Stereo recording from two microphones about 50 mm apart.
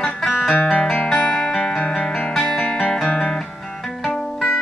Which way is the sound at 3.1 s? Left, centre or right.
Centre.